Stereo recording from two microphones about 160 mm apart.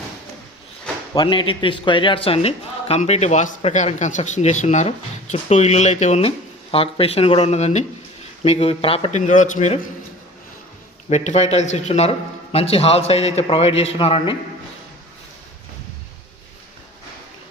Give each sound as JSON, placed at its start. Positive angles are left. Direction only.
{"t": 1.1, "sound": "speech", "side_deg": 30}
{"t": 11.1, "sound": "speech", "side_deg": 45}